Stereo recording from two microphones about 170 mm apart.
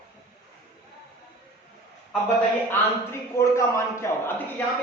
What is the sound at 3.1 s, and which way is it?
A man's voice, 15° left (ahead or behind).